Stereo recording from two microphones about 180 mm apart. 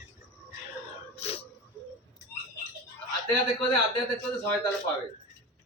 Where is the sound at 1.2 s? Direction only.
35° left (ahead or behind).